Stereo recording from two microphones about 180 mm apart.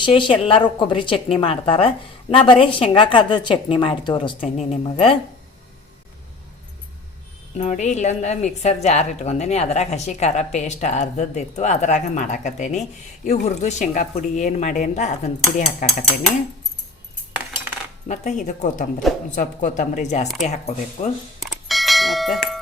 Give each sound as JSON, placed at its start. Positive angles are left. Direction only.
{"t": 0.0, "sound": "a woman's voice", "side_deg": 25}
{"t": 4.5, "sound": "a woman's voice", "side_deg": 40}
{"t": 7.6, "sound": "a woman's voice", "side_deg": 40}
{"t": 18.1, "sound": "speech", "side_deg": 45}
{"t": 20.2, "sound": "speech", "side_deg": 0}
{"t": 20.5, "sound": "a woman's voice", "side_deg": 35}
{"t": 21.4, "sound": "bell", "side_deg": 0}